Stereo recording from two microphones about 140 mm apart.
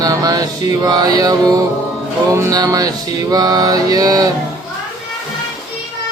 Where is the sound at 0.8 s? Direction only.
25° right (ahead or behind).